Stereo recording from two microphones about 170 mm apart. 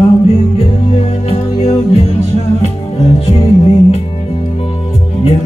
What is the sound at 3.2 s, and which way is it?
Music, 35° left (ahead or behind).